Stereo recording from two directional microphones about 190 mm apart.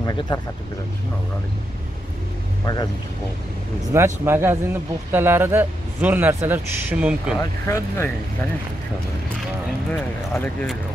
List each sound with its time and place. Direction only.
0.0 s speech: 25° left (ahead or behind)
2.6 s speech: 20° left (ahead or behind)
3.9 s speech: 15° right (ahead or behind)
7.6 s speech: 15° left (ahead or behind)
9.8 s speech: 5° left (ahead or behind)